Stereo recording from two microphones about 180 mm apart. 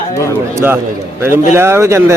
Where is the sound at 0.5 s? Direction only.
10° right (ahead or behind).